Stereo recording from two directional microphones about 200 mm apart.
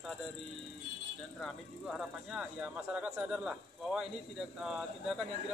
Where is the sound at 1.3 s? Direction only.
Centre (ahead or behind).